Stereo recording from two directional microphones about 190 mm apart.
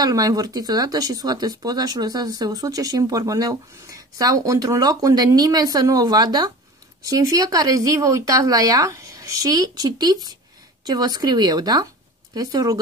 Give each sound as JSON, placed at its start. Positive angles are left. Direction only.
{"t": 0.0, "sound": "speech", "side_deg": -20}